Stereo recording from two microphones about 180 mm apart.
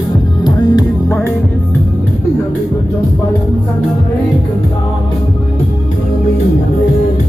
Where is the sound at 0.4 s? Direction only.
20° left (ahead or behind).